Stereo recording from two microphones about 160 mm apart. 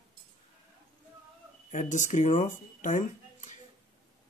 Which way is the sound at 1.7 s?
50° left (ahead or behind).